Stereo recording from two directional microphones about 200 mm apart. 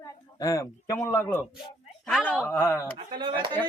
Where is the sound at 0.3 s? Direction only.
15° left (ahead or behind).